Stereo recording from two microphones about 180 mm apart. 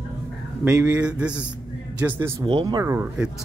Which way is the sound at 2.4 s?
25° right (ahead or behind).